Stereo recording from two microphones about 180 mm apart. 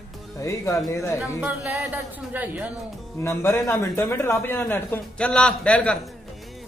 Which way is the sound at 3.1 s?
15° left (ahead or behind).